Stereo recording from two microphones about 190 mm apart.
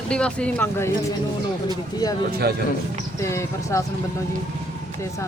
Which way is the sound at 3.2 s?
15° left (ahead or behind).